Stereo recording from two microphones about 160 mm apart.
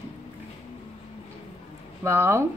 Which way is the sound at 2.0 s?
15° right (ahead or behind).